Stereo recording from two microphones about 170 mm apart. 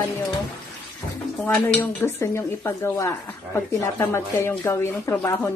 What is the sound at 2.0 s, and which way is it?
Speech, 15° left (ahead or behind).